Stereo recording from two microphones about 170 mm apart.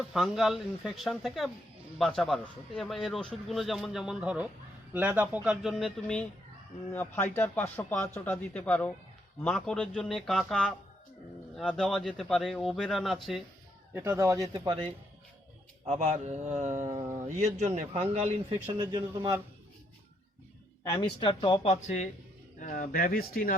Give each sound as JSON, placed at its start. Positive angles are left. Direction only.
{"t": 0.1, "sound": "a man's voice", "side_deg": 0}
{"t": 13.9, "sound": "speech", "side_deg": -15}
{"t": 16.0, "sound": "speech", "side_deg": -45}
{"t": 17.0, "sound": "a sound", "side_deg": -15}
{"t": 17.2, "sound": "a man's voice", "side_deg": -45}
{"t": 20.8, "sound": "speech", "side_deg": 15}
{"t": 21.2, "sound": "speech", "side_deg": 30}
{"t": 22.6, "sound": "speech", "side_deg": 55}